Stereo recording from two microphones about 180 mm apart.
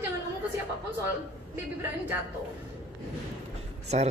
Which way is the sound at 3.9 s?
35° right (ahead or behind).